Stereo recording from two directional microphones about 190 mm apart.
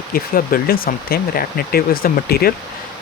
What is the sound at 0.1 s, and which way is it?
Speech, 50° left (ahead or behind).